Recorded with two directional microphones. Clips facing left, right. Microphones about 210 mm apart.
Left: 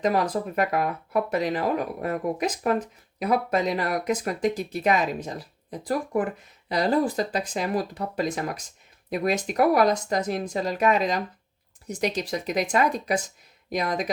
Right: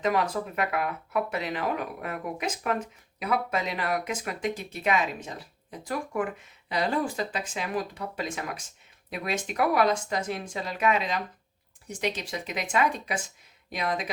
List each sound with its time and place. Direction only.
0.0 s speech: 40° left (ahead or behind)